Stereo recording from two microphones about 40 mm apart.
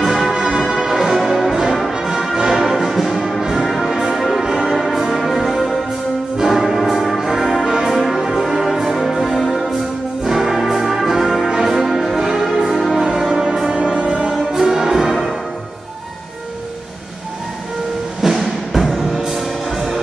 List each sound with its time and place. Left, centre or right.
0.0 s music: centre
0.3 s music: right
0.6 s music: centre
2.6 s orchestra: centre
3.7 s brass instrument: centre
4.6 s music: centre
13.8 s brass instrument: right
14.5 s music: centre
18.2 s music: centre